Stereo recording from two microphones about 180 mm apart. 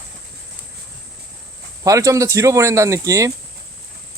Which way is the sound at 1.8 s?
15° right (ahead or behind).